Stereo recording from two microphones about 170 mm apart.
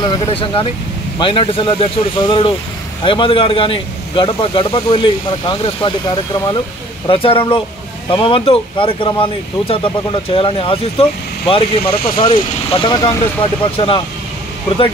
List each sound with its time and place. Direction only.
0.0 s speech: 30° left (ahead or behind)